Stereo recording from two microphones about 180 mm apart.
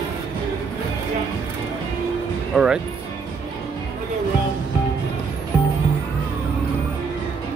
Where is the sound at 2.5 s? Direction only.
5° right (ahead or behind).